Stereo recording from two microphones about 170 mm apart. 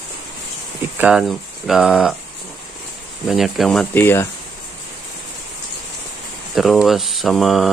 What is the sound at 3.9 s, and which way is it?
Speech, 15° left (ahead or behind).